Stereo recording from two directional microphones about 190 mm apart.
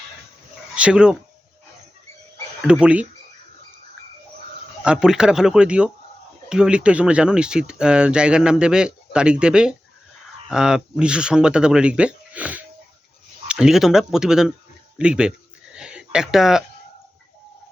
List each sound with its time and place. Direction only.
0.8 s speech: 5° right (ahead or behind)
2.6 s speech: 5° right (ahead or behind)
4.8 s speech: 5° right (ahead or behind)
15.7 s a sound: 5° right (ahead or behind)